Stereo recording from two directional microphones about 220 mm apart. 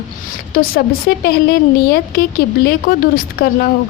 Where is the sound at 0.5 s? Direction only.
40° left (ahead or behind).